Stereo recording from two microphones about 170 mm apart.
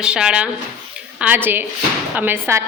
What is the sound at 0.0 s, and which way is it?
A woman's voice, 5° right (ahead or behind).